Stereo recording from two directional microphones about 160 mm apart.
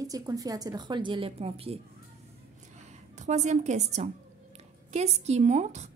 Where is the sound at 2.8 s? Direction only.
45° right (ahead or behind).